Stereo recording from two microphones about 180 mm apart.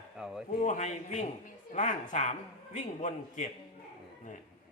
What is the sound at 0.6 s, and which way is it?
A man's voice, 45° left (ahead or behind).